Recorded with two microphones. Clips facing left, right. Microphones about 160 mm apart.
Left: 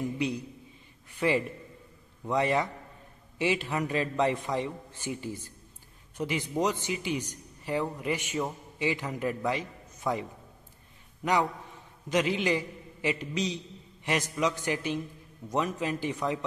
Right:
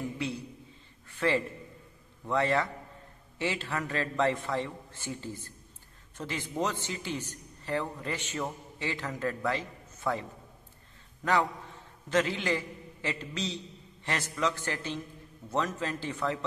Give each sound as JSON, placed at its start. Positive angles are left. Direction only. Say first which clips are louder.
{"t": 0.2, "sound": "a man's voice", "louder": "left 4 dB", "side_deg": 15}
{"t": 1.1, "sound": "a sound", "louder": "left 1 dB", "side_deg": 15}
{"t": 2.2, "sound": "a man's voice", "louder": "left 1 dB", "side_deg": 15}
{"t": 11.2, "sound": "a man's voice", "louder": "left 1 dB", "side_deg": 15}